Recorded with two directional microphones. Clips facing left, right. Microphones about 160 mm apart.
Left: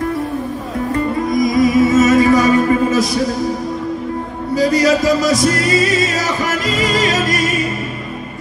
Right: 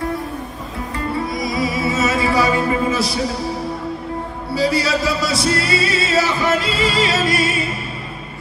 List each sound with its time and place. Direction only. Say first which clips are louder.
1.1 s music: left 7 dB; 45° left (ahead or behind)
4.6 s music: left 5 dB; 45° left (ahead or behind)